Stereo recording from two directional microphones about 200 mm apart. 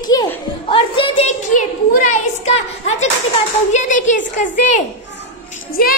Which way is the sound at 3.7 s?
40° left (ahead or behind).